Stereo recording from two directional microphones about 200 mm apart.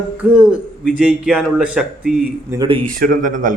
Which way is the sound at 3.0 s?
40° right (ahead or behind).